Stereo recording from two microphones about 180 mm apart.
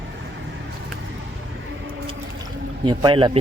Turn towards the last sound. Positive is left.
turn(degrees=-30)  # may be behind; listen again after turning